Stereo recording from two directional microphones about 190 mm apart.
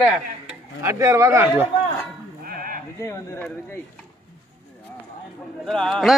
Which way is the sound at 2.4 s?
50° right (ahead or behind).